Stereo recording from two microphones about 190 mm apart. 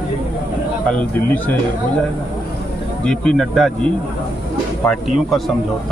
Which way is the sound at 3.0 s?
Centre (ahead or behind).